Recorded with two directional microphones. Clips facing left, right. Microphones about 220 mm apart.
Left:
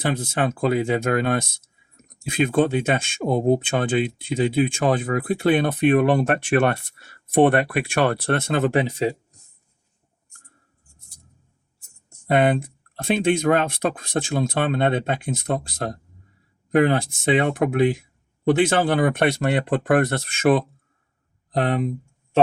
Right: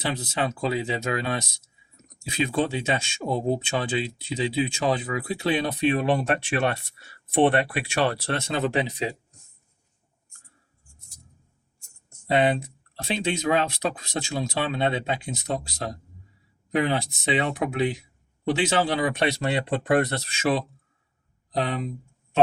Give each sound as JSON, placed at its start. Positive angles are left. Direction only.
{"t": 0.0, "sound": "speech", "side_deg": 50}
{"t": 12.3, "sound": "speech", "side_deg": 50}